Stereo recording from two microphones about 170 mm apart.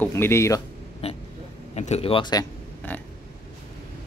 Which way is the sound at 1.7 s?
40° left (ahead or behind).